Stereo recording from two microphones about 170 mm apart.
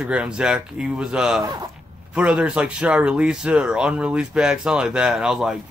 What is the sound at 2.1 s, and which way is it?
Speech, 5° right (ahead or behind).